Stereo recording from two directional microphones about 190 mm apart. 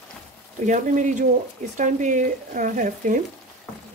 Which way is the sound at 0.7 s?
40° right (ahead or behind).